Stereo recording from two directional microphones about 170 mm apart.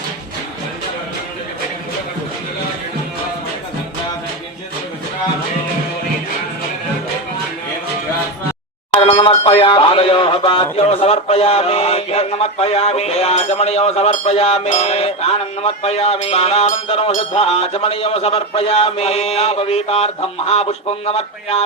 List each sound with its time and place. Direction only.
9.0 s speech: 35° left (ahead or behind)